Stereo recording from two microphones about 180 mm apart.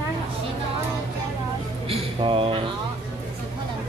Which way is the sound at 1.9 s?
30° right (ahead or behind).